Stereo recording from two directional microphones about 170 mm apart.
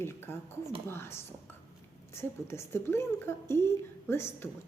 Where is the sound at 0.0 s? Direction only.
15° left (ahead or behind).